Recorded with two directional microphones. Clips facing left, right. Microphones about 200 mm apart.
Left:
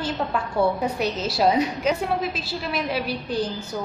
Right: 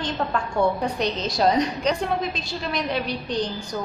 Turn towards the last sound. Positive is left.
turn(degrees=5)  # may be behind; listen again after turning